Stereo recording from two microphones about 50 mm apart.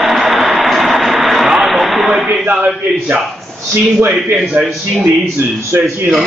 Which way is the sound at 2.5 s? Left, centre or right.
Right.